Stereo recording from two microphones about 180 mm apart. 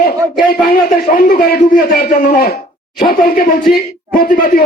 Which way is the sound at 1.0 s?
50° left (ahead or behind).